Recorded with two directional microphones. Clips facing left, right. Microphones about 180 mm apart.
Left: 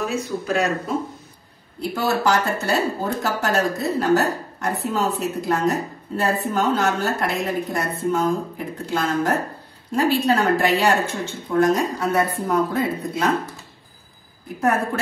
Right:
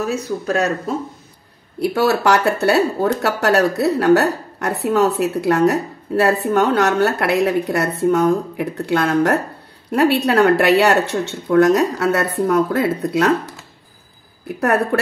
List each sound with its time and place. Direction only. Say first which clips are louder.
0.0 s speech: right 3 dB; 40° right (ahead or behind)
1.8 s speech: right 6 dB; 70° right (ahead or behind)